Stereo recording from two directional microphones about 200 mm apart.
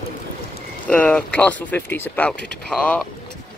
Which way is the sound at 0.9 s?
5° left (ahead or behind).